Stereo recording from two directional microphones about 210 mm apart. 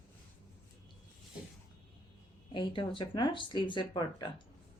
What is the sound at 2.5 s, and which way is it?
Speech, 25° left (ahead or behind).